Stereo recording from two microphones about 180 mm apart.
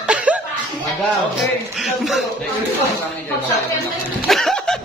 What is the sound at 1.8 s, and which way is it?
Speech, centre (ahead or behind).